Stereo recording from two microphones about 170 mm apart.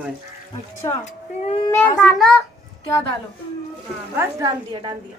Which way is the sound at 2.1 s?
Centre (ahead or behind).